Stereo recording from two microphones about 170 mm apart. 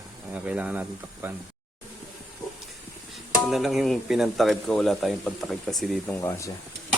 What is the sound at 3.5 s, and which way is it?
Speech, centre (ahead or behind).